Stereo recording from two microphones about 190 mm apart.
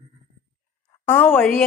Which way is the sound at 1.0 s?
10° left (ahead or behind).